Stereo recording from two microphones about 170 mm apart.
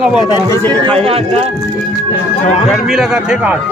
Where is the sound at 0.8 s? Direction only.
35° right (ahead or behind).